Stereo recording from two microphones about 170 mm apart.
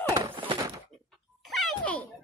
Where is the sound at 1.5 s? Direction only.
Centre (ahead or behind).